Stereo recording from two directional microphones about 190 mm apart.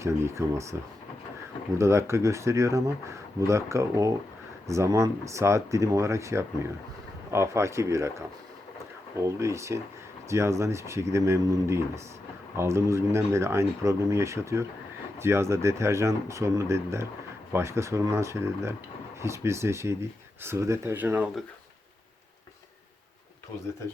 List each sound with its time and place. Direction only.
0.0 s speech: 15° right (ahead or behind)
1.8 s speech: 15° right (ahead or behind)
9.2 s speech: 15° right (ahead or behind)